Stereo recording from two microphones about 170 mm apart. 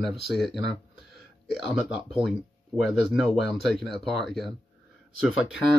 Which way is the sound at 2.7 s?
Centre (ahead or behind).